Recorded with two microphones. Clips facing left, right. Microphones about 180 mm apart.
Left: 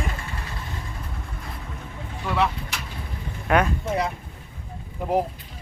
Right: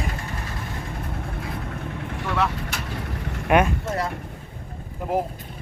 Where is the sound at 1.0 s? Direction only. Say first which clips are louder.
Right 6 dB; 60° right (ahead or behind).